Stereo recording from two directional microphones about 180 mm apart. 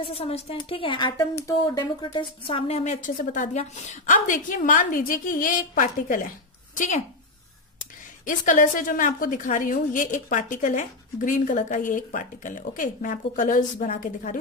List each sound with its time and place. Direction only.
0.0 s speech: 35° left (ahead or behind)
8.3 s a woman's voice: 45° left (ahead or behind)